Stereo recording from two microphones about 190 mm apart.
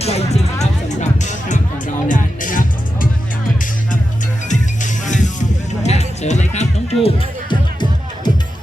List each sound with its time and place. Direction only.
0.0 s music: 35° left (ahead or behind)
4.4 s music: 40° left (ahead or behind)